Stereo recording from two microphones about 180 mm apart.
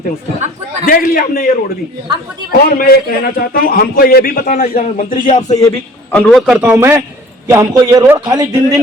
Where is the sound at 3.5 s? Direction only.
55° left (ahead or behind).